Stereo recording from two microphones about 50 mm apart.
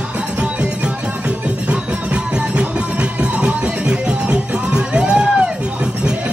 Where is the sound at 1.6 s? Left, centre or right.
Right.